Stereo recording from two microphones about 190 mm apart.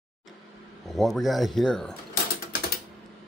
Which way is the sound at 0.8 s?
Centre (ahead or behind).